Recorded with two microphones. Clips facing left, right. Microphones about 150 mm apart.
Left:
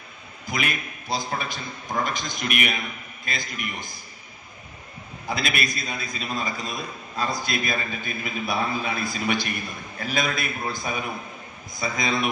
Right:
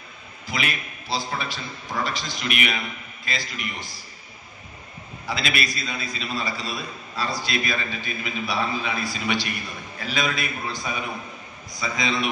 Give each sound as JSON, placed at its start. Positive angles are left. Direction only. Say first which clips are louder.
{"t": 0.5, "sound": "a man's voice", "louder": "left 1 dB", "side_deg": 50}
{"t": 5.2, "sound": "a man's voice", "louder": "even", "side_deg": 45}
{"t": 11.8, "sound": "a man's voice", "louder": "even", "side_deg": 50}